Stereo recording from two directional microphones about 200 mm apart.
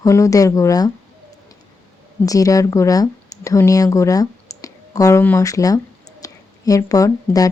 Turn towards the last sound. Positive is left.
turn(degrees=15)  # may be behind; listen again after turning